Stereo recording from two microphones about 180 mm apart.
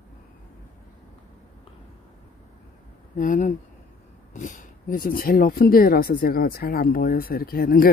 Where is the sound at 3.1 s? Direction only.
45° left (ahead or behind).